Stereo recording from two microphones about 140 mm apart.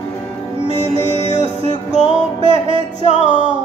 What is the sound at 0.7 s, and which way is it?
Music, 45° right (ahead or behind).